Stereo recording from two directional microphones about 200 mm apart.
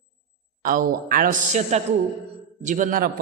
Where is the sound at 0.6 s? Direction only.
45° right (ahead or behind).